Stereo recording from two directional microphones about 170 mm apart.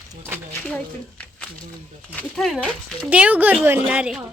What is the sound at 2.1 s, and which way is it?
Speech, 5° left (ahead or behind).